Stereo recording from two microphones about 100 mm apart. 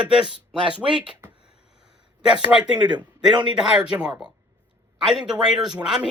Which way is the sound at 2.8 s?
45° right (ahead or behind).